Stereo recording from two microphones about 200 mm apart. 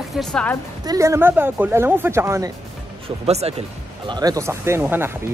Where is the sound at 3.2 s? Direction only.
30° right (ahead or behind).